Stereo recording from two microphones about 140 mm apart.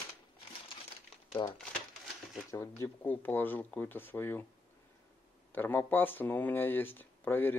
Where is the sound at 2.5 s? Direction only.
20° left (ahead or behind).